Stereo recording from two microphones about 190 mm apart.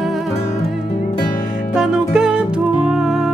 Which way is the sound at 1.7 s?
5° right (ahead or behind).